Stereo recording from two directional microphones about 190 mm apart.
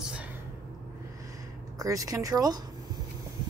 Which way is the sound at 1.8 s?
15° right (ahead or behind).